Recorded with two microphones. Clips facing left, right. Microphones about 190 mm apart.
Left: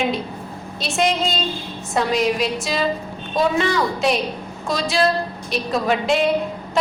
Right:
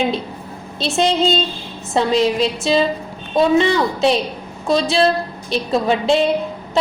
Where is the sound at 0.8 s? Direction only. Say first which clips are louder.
Right 4 dB; 30° right (ahead or behind).